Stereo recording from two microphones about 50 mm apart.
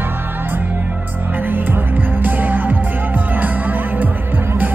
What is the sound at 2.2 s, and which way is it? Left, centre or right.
Music, right.